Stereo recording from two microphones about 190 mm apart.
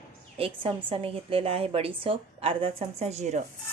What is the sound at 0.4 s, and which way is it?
A woman's voice, 30° right (ahead or behind).